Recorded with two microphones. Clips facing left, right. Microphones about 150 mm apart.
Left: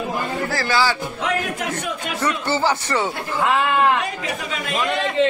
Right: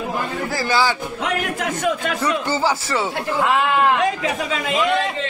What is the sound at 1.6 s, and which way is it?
Speech, 90° right.